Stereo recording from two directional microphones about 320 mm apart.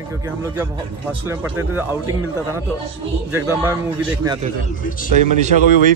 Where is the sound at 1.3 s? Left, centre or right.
Centre.